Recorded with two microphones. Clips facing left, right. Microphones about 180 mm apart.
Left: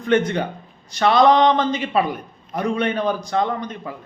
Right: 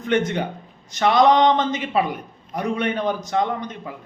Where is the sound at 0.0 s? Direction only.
20° right (ahead or behind).